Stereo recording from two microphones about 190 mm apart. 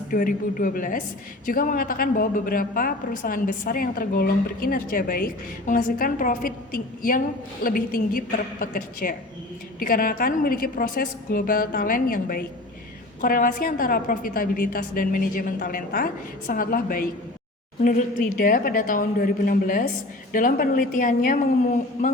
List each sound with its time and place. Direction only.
0.1 s a woman's voice: 45° left (ahead or behind)
7.6 s a woman's voice: 50° left (ahead or behind)